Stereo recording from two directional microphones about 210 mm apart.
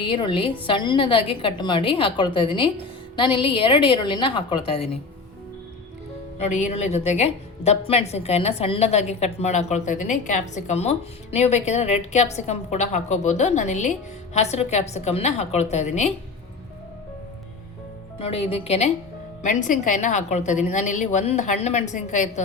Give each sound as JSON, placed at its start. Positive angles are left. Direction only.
{"t": 0.0, "sound": "a woman's voice", "side_deg": 25}
{"t": 6.4, "sound": "a woman's voice", "side_deg": 35}
{"t": 18.2, "sound": "a woman's voice", "side_deg": 30}